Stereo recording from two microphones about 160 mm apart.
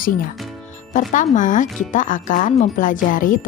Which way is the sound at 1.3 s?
55° left (ahead or behind).